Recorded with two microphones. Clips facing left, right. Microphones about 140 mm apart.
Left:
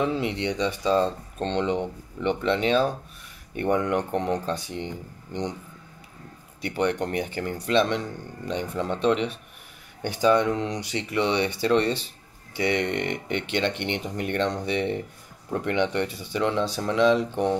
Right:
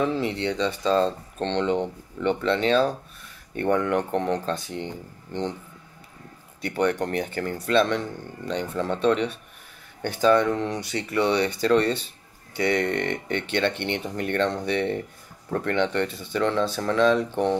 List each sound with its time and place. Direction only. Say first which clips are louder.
0.0 s speech: right 1 dB; 15° left (ahead or behind)
6.8 s speech: right 1 dB; 15° left (ahead or behind)